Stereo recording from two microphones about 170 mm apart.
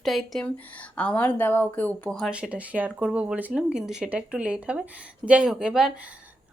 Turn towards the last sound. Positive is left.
turn(degrees=0)  # may be behind; listen again after turning